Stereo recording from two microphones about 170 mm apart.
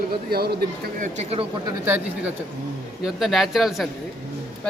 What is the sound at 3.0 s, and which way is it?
Speech, centre (ahead or behind).